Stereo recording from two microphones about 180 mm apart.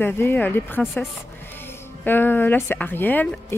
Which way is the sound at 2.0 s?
10° left (ahead or behind).